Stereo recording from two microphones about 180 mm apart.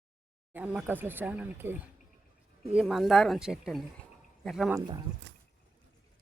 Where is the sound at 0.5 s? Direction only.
10° right (ahead or behind).